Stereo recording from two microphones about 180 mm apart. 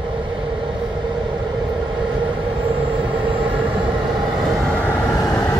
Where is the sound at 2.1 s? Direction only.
25° right (ahead or behind).